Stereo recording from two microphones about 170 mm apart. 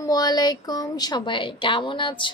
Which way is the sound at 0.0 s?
20° left (ahead or behind).